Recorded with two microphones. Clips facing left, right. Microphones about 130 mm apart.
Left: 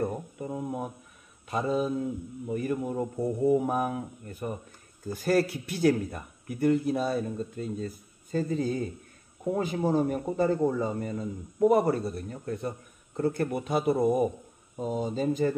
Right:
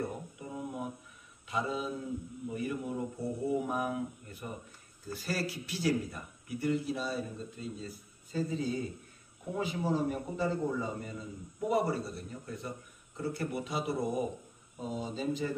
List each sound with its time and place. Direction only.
0.0 s mantra: 45° left (ahead or behind)
1.5 s speech: 45° left (ahead or behind)